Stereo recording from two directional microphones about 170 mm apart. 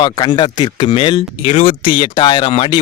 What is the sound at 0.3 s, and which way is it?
Speech, 25° left (ahead or behind).